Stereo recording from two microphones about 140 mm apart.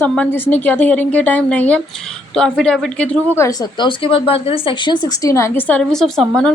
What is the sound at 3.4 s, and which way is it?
Speech, 25° left (ahead or behind).